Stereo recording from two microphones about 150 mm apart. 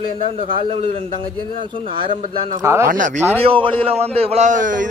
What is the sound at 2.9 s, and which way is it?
Speech, 60° right (ahead or behind).